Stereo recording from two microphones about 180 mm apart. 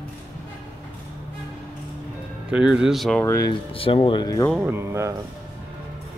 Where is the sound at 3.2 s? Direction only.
15° left (ahead or behind).